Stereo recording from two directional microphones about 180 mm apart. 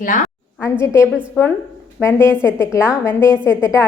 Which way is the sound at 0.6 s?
15° left (ahead or behind).